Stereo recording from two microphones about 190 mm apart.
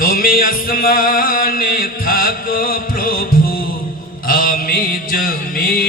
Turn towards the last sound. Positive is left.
turn(degrees=50)  # may be behind; listen again after turning